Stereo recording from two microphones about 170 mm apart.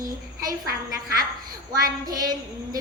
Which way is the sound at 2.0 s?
25° right (ahead or behind).